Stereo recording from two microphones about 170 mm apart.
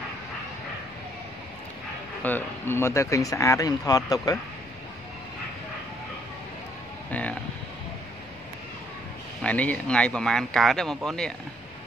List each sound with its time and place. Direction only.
2.2 s speech: 10° left (ahead or behind)
7.1 s a sound: 10° left (ahead or behind)
9.4 s speech: 10° left (ahead or behind)